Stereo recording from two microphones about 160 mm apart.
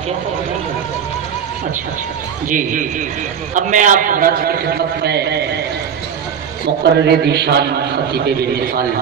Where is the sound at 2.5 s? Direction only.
55° right (ahead or behind); by 5.4 s 90° right.